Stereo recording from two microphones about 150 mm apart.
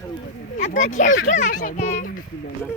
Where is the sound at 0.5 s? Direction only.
55° left (ahead or behind).